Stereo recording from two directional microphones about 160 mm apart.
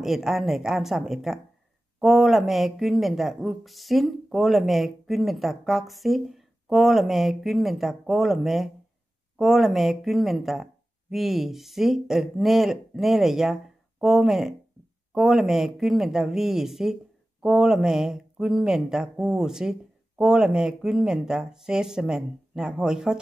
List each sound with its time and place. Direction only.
0.0 s speech: centre (ahead or behind)